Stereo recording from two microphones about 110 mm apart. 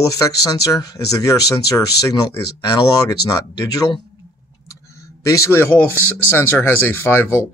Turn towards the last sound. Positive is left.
turn(degrees=20)  # may be behind; listen again after turning